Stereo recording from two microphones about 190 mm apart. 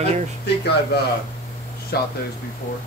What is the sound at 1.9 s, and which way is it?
Speech, 55° left (ahead or behind).